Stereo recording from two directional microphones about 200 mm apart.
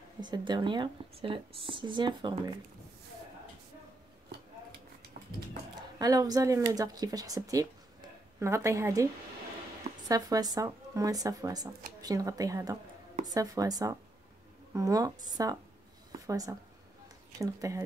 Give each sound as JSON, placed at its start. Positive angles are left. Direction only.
{"t": 0.2, "sound": "speech", "side_deg": -20}
{"t": 5.9, "sound": "speech", "side_deg": -20}
{"t": 16.1, "sound": "a sound", "side_deg": -15}
{"t": 17.4, "sound": "speech", "side_deg": -15}